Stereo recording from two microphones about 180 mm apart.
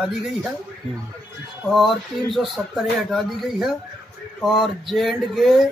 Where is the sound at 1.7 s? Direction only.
Centre (ahead or behind).